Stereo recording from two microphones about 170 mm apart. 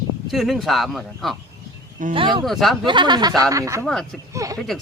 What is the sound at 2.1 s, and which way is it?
Speech, 30° right (ahead or behind).